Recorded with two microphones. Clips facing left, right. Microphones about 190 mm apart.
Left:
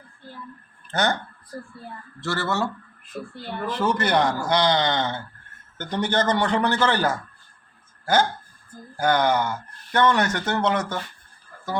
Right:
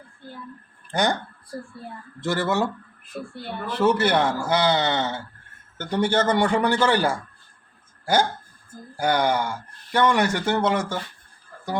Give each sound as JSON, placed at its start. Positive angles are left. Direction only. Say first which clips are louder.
{"t": 0.9, "sound": "speech", "louder": "right 1 dB", "side_deg": -15}
{"t": 3.1, "sound": "speech", "louder": "left 1 dB", "side_deg": -5}